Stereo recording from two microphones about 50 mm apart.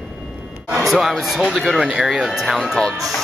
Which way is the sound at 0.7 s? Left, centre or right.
Centre.